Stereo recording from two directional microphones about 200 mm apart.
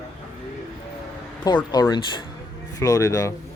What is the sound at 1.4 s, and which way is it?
Speech, 20° left (ahead or behind).